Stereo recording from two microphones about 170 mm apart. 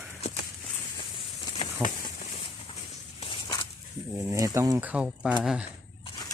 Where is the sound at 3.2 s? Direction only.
30° left (ahead or behind).